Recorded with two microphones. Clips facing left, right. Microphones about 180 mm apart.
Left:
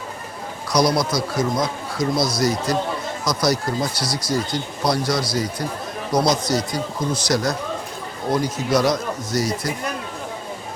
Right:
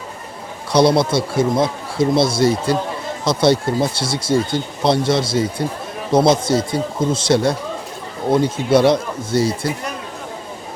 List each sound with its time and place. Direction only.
0.7 s speech: 30° right (ahead or behind)